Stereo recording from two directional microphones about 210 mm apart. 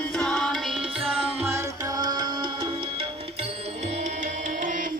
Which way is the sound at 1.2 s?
10° right (ahead or behind).